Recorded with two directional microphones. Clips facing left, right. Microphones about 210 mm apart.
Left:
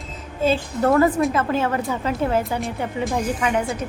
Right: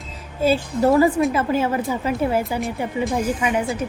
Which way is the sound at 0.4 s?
10° right (ahead or behind).